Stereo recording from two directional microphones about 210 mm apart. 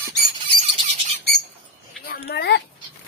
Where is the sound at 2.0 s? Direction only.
45° left (ahead or behind).